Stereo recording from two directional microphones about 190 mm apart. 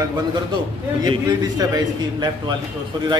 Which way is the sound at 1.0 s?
20° right (ahead or behind).